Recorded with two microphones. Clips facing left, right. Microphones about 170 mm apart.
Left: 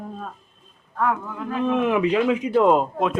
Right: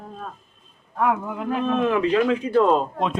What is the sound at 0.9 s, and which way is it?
Speech, 15° right (ahead or behind).